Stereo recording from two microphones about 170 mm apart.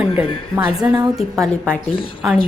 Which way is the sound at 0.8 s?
10° right (ahead or behind).